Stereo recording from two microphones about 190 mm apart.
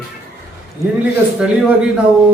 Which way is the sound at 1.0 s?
5° right (ahead or behind).